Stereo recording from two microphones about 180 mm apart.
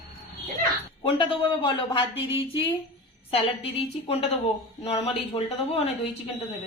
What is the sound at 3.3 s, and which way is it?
A woman's voice, 30° left (ahead or behind).